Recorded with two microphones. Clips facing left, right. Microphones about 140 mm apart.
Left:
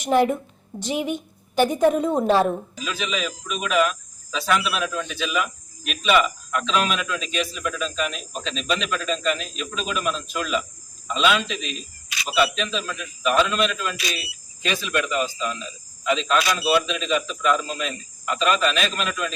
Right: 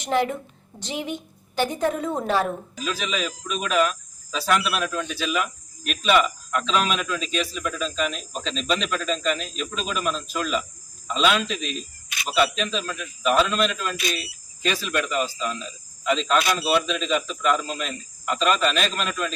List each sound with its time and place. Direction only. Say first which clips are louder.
0.0 s a woman's voice: left 4 dB; 15° left (ahead or behind)
2.7 s speech: even; centre (ahead or behind)
12.0 s a sound: left 3 dB; 50° right (ahead or behind)
12.4 s speech: even; centre (ahead or behind)